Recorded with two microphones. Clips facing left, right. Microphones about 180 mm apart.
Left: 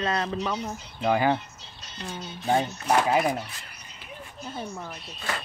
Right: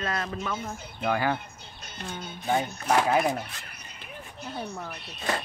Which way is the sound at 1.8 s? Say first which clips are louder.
Left 1 dB; 55° right (ahead or behind).